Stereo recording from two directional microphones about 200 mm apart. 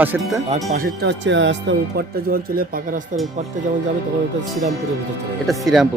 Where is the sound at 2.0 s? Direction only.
50° right (ahead or behind).